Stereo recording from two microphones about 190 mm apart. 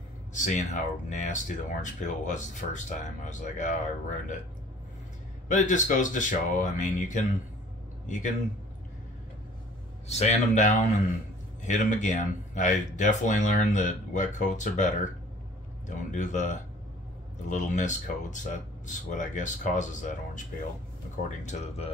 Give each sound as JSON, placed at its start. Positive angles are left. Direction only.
{"t": 0.3, "sound": "speech", "side_deg": 40}
{"t": 5.5, "sound": "speech", "side_deg": 40}
{"t": 10.0, "sound": "speech", "side_deg": 35}
{"t": 16.1, "sound": "speech", "side_deg": 40}